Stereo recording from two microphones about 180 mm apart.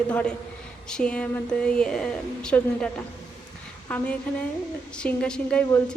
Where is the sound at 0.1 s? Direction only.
5° left (ahead or behind).